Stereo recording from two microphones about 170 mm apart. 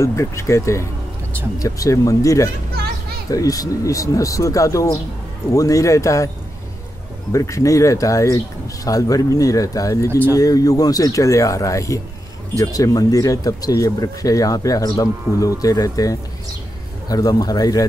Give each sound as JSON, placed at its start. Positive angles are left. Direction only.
{"t": 0.0, "sound": "speech", "side_deg": 15}
{"t": 7.3, "sound": "speech", "side_deg": 20}